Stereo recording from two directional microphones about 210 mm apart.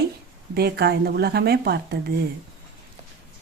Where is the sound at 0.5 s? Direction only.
50° right (ahead or behind).